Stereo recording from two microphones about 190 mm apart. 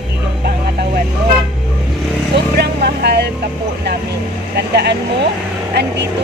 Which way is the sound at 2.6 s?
55° right (ahead or behind).